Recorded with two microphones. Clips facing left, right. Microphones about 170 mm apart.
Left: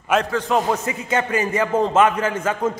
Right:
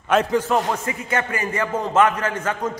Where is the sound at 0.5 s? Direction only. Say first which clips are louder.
Left 1 dB; 20° left (ahead or behind).